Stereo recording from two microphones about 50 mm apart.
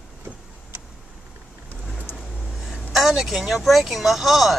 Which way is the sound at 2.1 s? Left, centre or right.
Centre.